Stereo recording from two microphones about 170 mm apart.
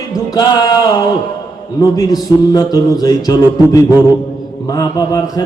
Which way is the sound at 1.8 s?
20° left (ahead or behind).